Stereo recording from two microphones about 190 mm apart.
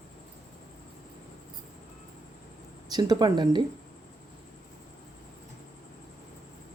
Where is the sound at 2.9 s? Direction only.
20° right (ahead or behind).